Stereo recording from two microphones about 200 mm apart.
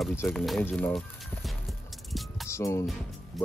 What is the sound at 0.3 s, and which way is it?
Speech, centre (ahead or behind).